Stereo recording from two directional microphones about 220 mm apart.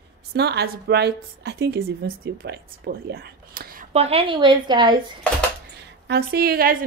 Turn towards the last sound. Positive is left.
turn(degrees=-45)  # may be behind; listen again after turning